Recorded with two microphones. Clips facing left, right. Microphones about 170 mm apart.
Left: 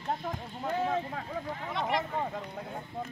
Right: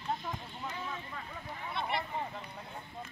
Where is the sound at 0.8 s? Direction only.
70° left (ahead or behind).